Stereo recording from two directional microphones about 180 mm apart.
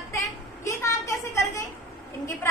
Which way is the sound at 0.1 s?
15° left (ahead or behind).